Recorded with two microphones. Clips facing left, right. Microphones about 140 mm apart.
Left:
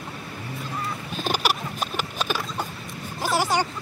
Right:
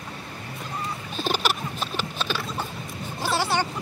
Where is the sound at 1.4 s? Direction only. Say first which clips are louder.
Left 1 dB; 45° left (ahead or behind).